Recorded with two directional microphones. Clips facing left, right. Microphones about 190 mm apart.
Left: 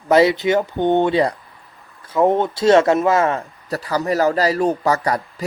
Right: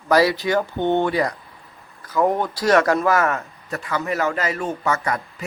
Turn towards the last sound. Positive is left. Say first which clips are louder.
# left 4 dB
turn(degrees=35)  # may be behind; listen again after turning